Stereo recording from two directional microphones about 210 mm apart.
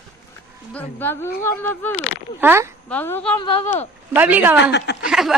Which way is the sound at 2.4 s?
10° right (ahead or behind).